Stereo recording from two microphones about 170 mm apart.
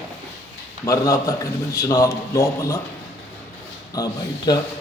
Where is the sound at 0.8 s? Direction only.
20° left (ahead or behind).